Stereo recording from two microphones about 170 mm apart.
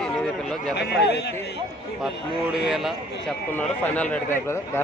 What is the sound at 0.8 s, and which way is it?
Speech, 80° left.